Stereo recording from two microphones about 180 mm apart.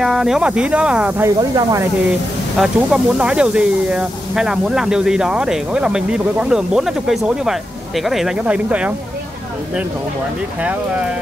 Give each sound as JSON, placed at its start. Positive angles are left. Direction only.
{"t": 0.0, "sound": "speech", "side_deg": 0}
{"t": 1.5, "sound": "speech", "side_deg": -20}
{"t": 2.5, "sound": "speech", "side_deg": -5}
{"t": 10.6, "sound": "speech", "side_deg": -5}